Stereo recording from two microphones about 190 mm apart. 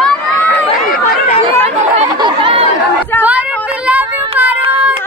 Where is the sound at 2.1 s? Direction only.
25° right (ahead or behind).